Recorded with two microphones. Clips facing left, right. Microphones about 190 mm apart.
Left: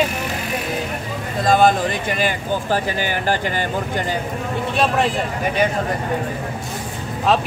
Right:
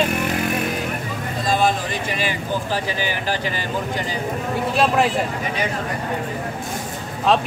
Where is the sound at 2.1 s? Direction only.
50° left (ahead or behind).